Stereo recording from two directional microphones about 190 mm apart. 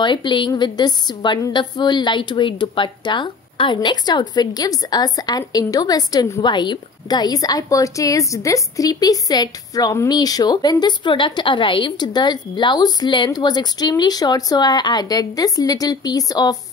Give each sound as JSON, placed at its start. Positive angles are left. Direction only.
{"t": 0.0, "sound": "a woman's voice", "side_deg": 25}